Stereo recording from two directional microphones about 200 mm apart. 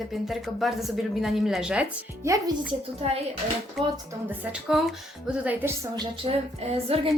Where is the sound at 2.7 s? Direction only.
30° right (ahead or behind).